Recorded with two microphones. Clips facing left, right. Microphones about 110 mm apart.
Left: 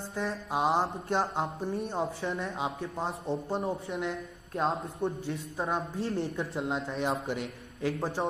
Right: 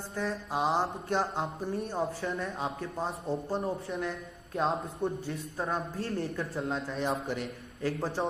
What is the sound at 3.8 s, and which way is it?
Speech, 20° left (ahead or behind).